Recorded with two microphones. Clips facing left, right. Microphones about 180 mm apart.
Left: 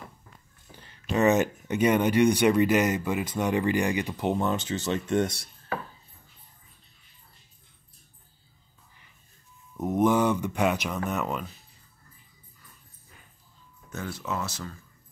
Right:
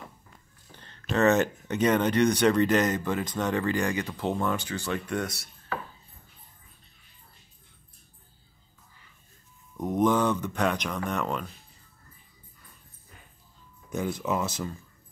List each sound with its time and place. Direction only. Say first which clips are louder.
0.7 s speech: even; 10° left (ahead or behind); by 5.8 s 25° left (ahead or behind)
9.8 s a sound: left 1 dB; 5° left (ahead or behind)
13.8 s speech: right 5 dB; 15° right (ahead or behind)